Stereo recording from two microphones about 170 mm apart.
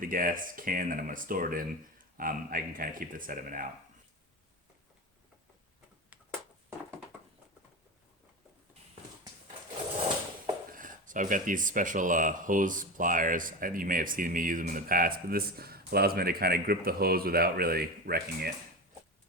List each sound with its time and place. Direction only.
0.0 s speech: 55° right (ahead or behind)
10.7 s speech: 50° right (ahead or behind)